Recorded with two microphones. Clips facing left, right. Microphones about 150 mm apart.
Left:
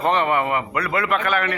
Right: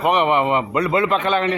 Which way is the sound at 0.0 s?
15° right (ahead or behind).